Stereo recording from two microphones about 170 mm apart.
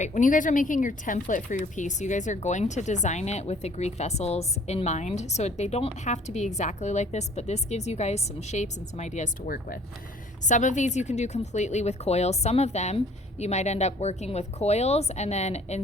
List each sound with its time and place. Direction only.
0.0 s a woman's voice: 50° left (ahead or behind)